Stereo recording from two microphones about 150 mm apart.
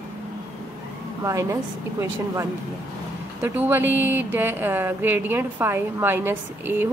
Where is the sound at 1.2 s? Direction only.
20° right (ahead or behind).